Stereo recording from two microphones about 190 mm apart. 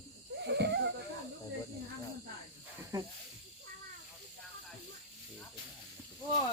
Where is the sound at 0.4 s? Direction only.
65° right (ahead or behind).